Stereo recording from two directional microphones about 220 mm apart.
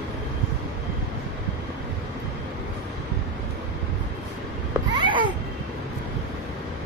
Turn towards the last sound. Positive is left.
turn(degrees=-20)  # may be behind; listen again after turning